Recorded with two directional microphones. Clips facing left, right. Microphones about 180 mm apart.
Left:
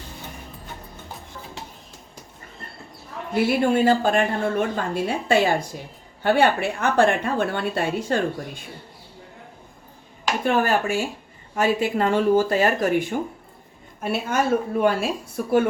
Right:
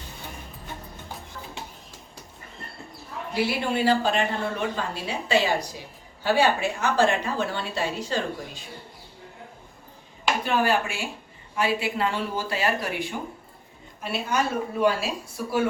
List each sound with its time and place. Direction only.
3.3 s a woman's voice: 50° left (ahead or behind)
10.4 s speech: 45° left (ahead or behind)